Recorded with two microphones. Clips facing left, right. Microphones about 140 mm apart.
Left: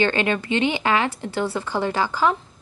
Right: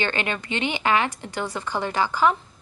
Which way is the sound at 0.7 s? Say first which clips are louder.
Left 1 dB; 20° right (ahead or behind).